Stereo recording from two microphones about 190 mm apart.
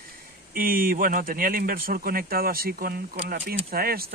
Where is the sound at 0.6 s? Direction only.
50° right (ahead or behind).